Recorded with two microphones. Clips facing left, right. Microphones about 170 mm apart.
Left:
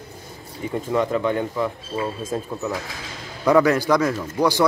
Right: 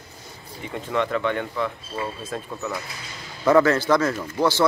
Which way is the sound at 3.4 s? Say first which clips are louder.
Left 1 dB; 15° left (ahead or behind).